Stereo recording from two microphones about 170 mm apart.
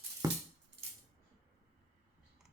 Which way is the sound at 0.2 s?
20° right (ahead or behind).